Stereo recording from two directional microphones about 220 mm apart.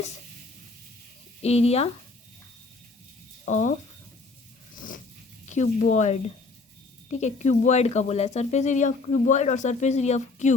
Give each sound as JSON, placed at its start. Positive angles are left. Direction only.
{"t": 1.4, "sound": "speech", "side_deg": 30}
{"t": 3.4, "sound": "speech", "side_deg": 35}
{"t": 5.5, "sound": "speech", "side_deg": 35}